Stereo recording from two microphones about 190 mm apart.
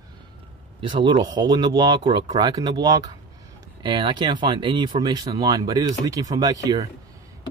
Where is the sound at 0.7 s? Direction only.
25° right (ahead or behind).